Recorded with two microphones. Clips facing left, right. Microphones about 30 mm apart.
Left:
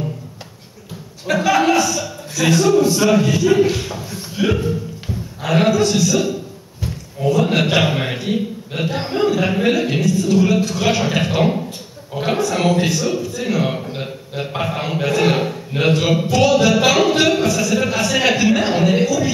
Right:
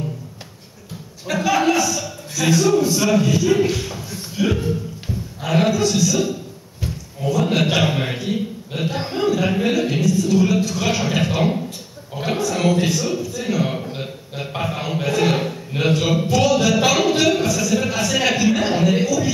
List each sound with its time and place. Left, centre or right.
1.2 s a man's voice: centre